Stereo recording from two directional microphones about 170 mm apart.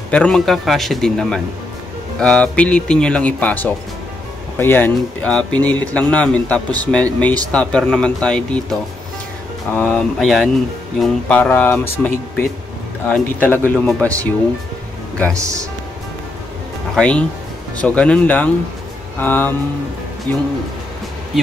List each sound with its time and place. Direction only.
0.1 s a man's voice: 5° left (ahead or behind)
13.1 s a man's voice: 10° left (ahead or behind)
15.3 s speech: 20° right (ahead or behind)
16.9 s a man's voice: 5° left (ahead or behind)